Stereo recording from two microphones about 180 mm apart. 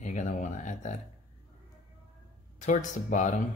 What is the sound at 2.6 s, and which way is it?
Speech, 45° left (ahead or behind).